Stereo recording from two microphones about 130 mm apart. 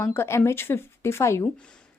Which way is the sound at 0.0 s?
20° left (ahead or behind).